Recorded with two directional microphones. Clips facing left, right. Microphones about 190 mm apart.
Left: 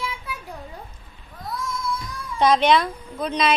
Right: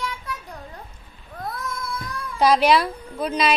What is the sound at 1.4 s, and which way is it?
Cat, 55° right (ahead or behind).